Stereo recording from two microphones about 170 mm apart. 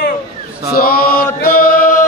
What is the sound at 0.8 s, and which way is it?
Mantra, 60° left (ahead or behind).